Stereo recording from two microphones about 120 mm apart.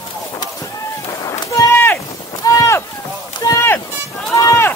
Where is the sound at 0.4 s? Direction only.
25° left (ahead or behind).